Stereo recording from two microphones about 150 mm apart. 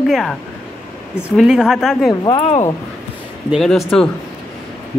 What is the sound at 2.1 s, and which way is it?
Speech, 30° left (ahead or behind).